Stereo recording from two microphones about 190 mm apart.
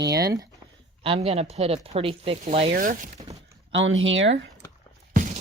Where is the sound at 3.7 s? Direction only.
85° right.